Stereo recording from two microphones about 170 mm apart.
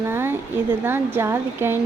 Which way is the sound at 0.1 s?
15° right (ahead or behind).